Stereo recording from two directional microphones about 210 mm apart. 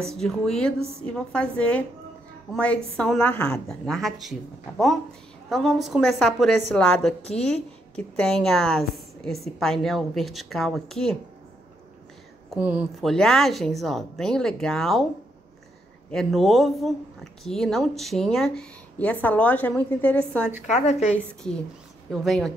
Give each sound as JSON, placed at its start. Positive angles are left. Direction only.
{"t": 0.1, "sound": "a woman's voice", "side_deg": 0}
{"t": 12.4, "sound": "a woman's voice", "side_deg": -5}
{"t": 16.1, "sound": "a woman's voice", "side_deg": 0}
{"t": 20.7, "sound": "a woman's voice", "side_deg": 30}
{"t": 22.1, "sound": "a woman's voice", "side_deg": 0}